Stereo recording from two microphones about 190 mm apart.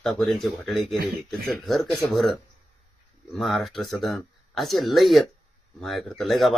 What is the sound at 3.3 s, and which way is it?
Speech, centre (ahead or behind).